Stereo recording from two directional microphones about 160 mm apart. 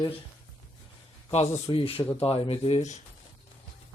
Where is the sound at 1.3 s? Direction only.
40° left (ahead or behind).